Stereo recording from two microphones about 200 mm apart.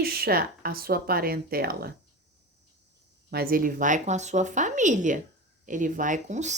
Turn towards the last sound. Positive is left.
turn(degrees=-35)  # may be behind; listen again after turning